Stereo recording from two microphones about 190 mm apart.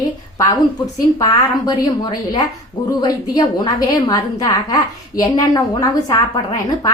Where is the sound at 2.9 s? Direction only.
20° left (ahead or behind).